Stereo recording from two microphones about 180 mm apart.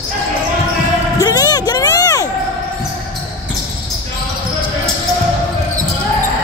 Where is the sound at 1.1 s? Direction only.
20° left (ahead or behind).